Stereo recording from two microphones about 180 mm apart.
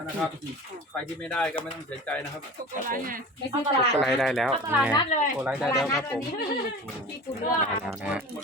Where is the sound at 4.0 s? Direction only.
Centre (ahead or behind).